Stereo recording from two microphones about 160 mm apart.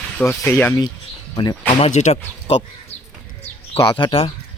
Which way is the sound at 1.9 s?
45° left (ahead or behind).